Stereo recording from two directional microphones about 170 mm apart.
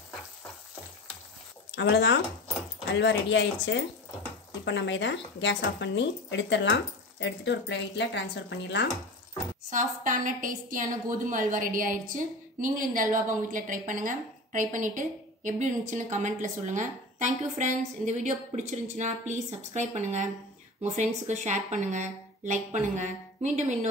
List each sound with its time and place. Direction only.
1.8 s speech: 90° left
9.7 s a woman's voice: 50° right (ahead or behind)